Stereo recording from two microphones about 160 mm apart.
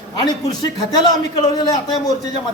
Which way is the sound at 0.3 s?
25° left (ahead or behind).